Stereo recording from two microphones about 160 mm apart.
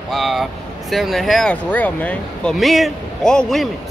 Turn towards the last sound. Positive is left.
turn(degrees=0)  # may be behind; listen again after turning